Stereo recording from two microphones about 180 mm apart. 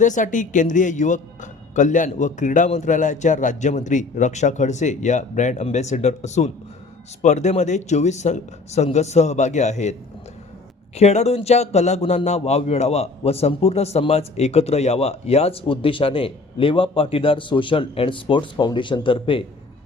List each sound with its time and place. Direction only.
0.0 s speech: 45° left (ahead or behind)
10.9 s speech: 35° left (ahead or behind)